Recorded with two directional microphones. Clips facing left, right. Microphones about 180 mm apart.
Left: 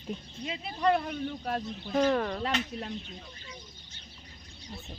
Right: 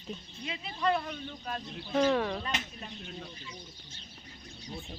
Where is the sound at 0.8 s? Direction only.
55° left (ahead or behind).